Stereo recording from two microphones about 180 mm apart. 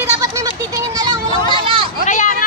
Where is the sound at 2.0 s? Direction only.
40° left (ahead or behind).